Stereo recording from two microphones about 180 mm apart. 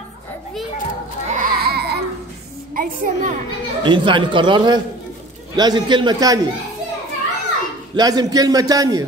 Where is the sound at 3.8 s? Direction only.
25° right (ahead or behind).